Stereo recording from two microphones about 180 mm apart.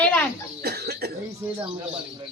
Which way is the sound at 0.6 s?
65° right (ahead or behind).